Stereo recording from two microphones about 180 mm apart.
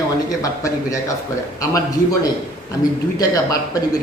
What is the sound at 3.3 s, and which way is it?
Speech, 20° left (ahead or behind).